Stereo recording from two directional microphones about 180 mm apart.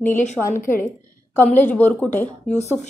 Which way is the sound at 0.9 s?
10° left (ahead or behind).